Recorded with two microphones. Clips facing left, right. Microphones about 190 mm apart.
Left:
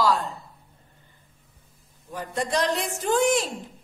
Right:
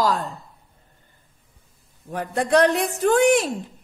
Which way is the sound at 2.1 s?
60° right (ahead or behind).